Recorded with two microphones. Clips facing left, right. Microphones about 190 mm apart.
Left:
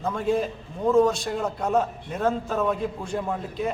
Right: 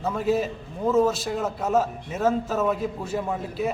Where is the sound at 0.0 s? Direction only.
5° right (ahead or behind).